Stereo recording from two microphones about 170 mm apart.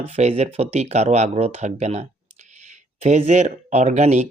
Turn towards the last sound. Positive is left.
turn(degrees=-40)  # may be behind; listen again after turning